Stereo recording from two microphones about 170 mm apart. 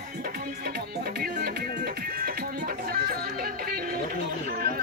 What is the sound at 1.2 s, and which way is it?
Music, 65° right (ahead or behind).